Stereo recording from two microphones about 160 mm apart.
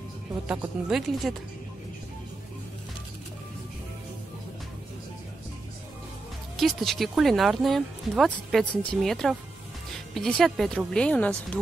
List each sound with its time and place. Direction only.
0.8 s speech: centre (ahead or behind)
6.5 s speech: centre (ahead or behind)